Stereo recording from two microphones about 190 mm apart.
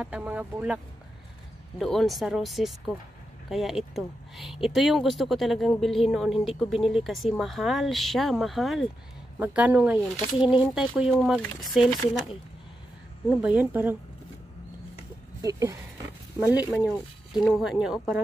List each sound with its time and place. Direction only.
0.0 s speech: 5° right (ahead or behind)
1.8 s speech: centre (ahead or behind)
13.3 s speech: 5° right (ahead or behind)
15.4 s speech: 15° right (ahead or behind)